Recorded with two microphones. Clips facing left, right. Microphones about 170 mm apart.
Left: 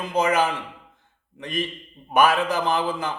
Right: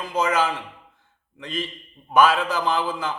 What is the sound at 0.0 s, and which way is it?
Speech, 15° left (ahead or behind).